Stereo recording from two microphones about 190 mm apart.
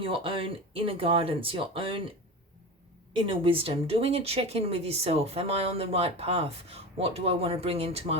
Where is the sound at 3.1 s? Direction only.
30° right (ahead or behind).